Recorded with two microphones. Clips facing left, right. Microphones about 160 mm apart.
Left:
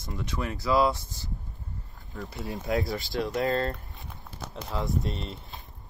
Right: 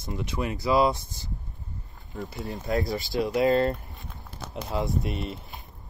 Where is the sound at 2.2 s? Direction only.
Centre (ahead or behind).